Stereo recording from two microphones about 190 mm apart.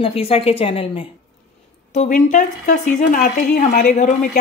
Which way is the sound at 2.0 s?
40° left (ahead or behind).